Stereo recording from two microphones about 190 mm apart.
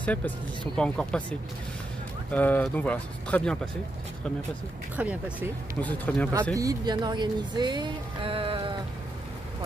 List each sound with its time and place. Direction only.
0.0 s speech: 10° left (ahead or behind)
2.3 s speech: 10° left (ahead or behind)
4.9 s speech: 10° right (ahead or behind)
5.8 s speech: 10° left (ahead or behind)
6.5 s speech: 20° right (ahead or behind)